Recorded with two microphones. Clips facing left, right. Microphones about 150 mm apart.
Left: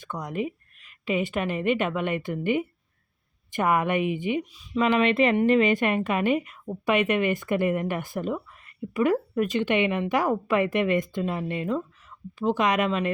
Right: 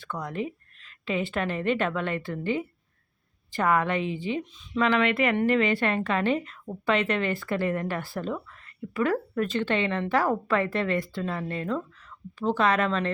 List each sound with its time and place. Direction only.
0.0 s a woman's voice: 15° left (ahead or behind)